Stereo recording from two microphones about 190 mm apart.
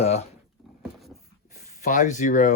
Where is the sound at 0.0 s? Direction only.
35° left (ahead or behind).